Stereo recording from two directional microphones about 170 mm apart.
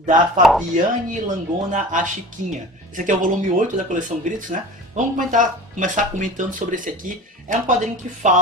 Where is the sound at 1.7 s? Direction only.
50° right (ahead or behind).